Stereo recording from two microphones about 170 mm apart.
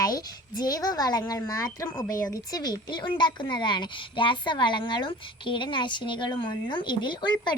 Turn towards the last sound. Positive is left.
turn(degrees=25)  # may be behind; listen again after turning